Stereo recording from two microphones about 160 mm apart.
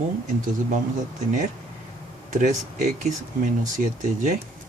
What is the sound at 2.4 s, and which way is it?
Speech, 50° right (ahead or behind).